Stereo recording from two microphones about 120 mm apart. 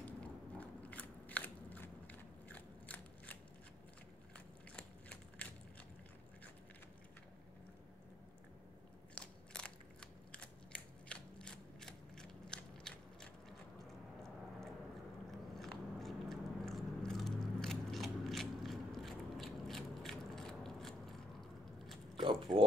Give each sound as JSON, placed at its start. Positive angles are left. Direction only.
{"t": 0.0, "sound": "biting", "side_deg": 10}
{"t": 4.7, "sound": "biting", "side_deg": 10}
{"t": 9.1, "sound": "biting", "side_deg": 10}
{"t": 15.3, "sound": "biting", "side_deg": 0}
{"t": 22.1, "sound": "mechanisms", "side_deg": -45}